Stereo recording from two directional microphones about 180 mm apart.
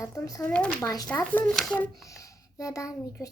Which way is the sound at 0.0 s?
15° left (ahead or behind).